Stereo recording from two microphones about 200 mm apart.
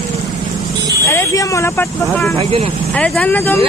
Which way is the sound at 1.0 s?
15° left (ahead or behind).